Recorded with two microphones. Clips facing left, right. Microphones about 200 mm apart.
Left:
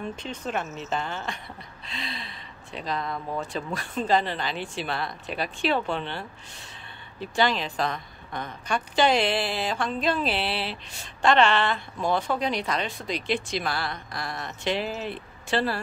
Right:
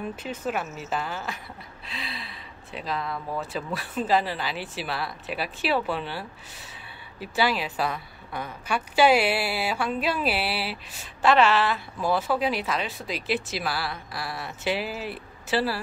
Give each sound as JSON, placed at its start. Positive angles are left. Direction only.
{"t": 0.0, "sound": "a woman's voice", "side_deg": -5}